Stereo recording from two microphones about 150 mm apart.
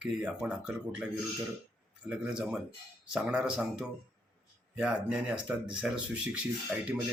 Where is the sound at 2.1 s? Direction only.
5° right (ahead or behind).